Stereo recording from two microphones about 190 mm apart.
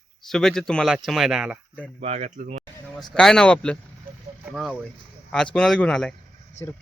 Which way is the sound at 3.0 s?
5° left (ahead or behind).